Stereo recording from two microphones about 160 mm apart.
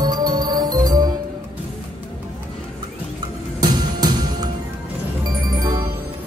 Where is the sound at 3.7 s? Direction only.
25° right (ahead or behind).